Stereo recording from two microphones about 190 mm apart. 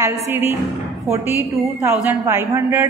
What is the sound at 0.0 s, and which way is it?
A man's voice, 10° right (ahead or behind).